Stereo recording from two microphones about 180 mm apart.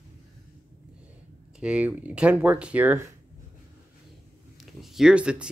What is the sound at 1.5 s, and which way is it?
Speech, 5° right (ahead or behind).